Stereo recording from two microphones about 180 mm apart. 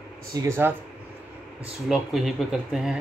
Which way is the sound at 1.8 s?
Centre (ahead or behind).